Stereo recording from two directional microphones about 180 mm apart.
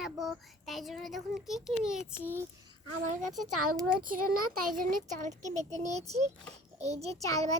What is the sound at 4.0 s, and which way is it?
Speech, 50° right (ahead or behind).